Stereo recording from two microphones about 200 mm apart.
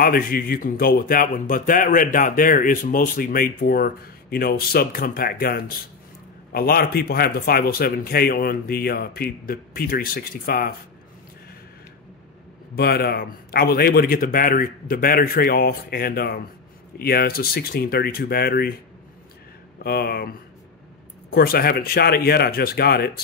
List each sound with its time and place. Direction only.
0.0 s speech: 45° left (ahead or behind)
12.7 s speech: 50° left (ahead or behind)
19.8 s speech: 50° left (ahead or behind)